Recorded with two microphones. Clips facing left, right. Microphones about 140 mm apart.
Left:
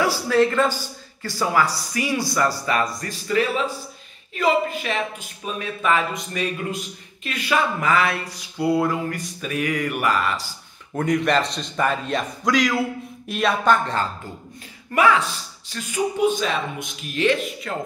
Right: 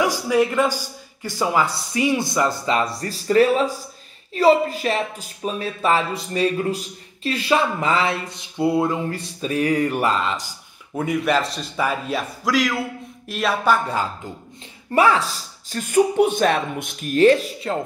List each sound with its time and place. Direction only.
0.0 s a man's voice: 15° right (ahead or behind)
10.9 s a man's voice: 5° right (ahead or behind)
14.9 s speech: 35° right (ahead or behind)